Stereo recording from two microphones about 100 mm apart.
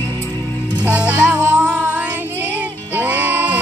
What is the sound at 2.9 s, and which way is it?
Music, 15° right (ahead or behind).